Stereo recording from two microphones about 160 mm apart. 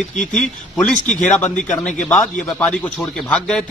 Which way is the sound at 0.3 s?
5° left (ahead or behind).